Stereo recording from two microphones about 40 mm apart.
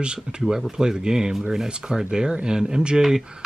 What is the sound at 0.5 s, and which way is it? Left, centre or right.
Speech, centre.